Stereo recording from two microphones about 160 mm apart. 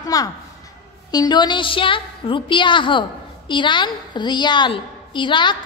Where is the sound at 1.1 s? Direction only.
25° left (ahead or behind).